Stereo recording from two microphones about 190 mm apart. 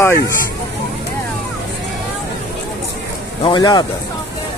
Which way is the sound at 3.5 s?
25° left (ahead or behind).